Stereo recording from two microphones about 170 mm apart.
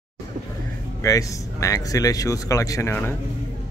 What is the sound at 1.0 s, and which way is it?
Speech, 20° left (ahead or behind).